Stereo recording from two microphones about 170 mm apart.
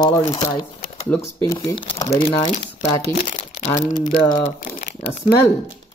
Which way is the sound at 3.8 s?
50° left (ahead or behind).